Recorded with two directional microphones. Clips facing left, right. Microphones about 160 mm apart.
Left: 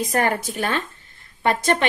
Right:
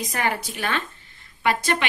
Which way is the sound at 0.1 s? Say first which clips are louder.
Left 4 dB; 45° left (ahead or behind).